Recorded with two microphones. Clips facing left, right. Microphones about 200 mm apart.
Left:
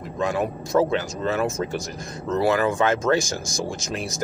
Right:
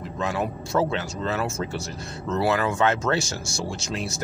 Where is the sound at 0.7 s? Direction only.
15° left (ahead or behind).